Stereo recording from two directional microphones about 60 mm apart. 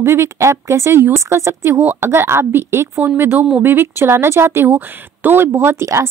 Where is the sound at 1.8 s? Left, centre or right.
Right.